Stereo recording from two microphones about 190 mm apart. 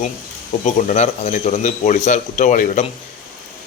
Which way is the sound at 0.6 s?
40° left (ahead or behind).